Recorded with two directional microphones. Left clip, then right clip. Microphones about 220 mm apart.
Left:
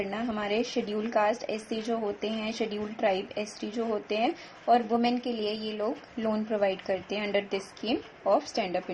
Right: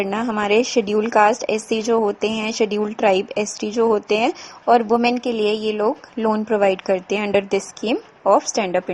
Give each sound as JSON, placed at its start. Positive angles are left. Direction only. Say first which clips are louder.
{"t": 0.0, "sound": "a woman's voice", "louder": "right 11 dB", "side_deg": -45}